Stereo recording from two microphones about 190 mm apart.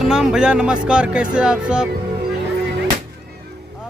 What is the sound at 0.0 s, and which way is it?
Speech, centre (ahead or behind).